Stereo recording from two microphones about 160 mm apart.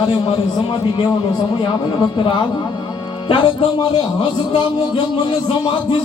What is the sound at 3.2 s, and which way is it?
A man's voice, 30° left (ahead or behind).